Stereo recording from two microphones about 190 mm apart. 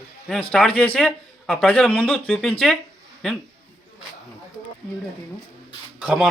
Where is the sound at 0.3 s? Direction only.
5° left (ahead or behind).